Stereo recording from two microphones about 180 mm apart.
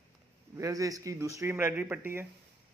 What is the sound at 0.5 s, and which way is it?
Speech, 20° right (ahead or behind).